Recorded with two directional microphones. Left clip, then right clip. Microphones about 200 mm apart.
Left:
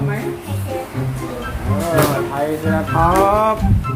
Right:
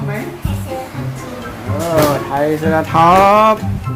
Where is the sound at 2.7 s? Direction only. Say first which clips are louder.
Right 6 dB; 50° right (ahead or behind).